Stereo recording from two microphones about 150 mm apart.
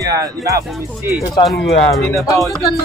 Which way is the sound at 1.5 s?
Centre (ahead or behind).